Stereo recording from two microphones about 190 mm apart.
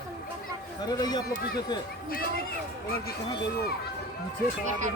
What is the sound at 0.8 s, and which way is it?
Speech, 20° left (ahead or behind).